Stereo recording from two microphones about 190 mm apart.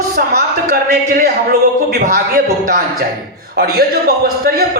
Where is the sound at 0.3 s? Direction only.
50° right (ahead or behind).